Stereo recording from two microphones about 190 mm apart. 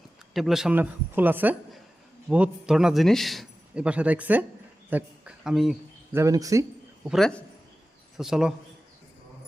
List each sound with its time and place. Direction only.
0.3 s a man's voice: centre (ahead or behind)
6.1 s a man's voice: 15° right (ahead or behind)
7.0 s a man's voice: centre (ahead or behind)